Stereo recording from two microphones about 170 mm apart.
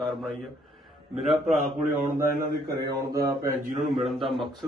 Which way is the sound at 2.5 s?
70° right (ahead or behind).